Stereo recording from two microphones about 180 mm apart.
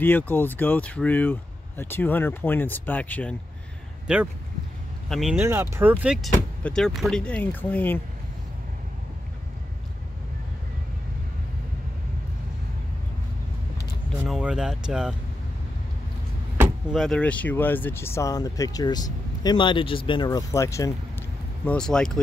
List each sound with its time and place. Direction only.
0.0 s speech: 10° left (ahead or behind)
4.1 s speech: 5° right (ahead or behind)
5.4 s speech: 15° right (ahead or behind)
6.2 s speech: 5° left (ahead or behind)
14.2 s speech: 5° right (ahead or behind)
16.9 s speech: centre (ahead or behind); by 20.2 s 30° left (ahead or behind)
20.2 s speech: 15° left (ahead or behind)
21.6 s speech: 5° left (ahead or behind)